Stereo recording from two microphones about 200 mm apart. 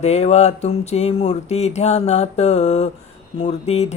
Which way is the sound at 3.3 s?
30° left (ahead or behind).